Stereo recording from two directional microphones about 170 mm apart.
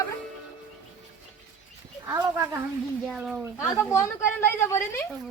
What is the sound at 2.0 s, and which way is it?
Speech, 15° right (ahead or behind).